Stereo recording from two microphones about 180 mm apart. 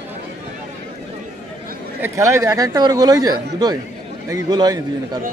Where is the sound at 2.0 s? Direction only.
15° right (ahead or behind).